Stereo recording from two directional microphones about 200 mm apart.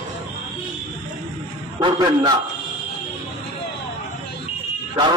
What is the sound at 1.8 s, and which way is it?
Speech, 20° right (ahead or behind).